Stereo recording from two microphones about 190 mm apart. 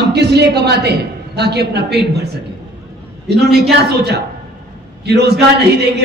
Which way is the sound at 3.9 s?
60° right (ahead or behind).